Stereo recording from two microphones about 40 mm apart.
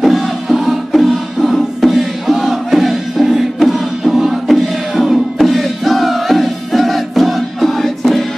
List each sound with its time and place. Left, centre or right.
0.0 s music: centre